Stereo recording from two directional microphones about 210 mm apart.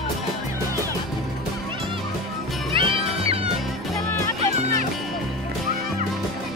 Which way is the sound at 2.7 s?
25° right (ahead or behind).